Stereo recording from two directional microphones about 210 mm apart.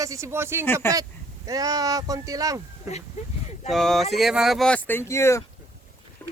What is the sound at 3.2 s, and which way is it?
Speech, 30° left (ahead or behind).